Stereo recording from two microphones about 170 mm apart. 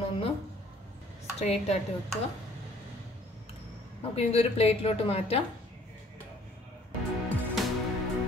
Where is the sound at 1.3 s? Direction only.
40° left (ahead or behind).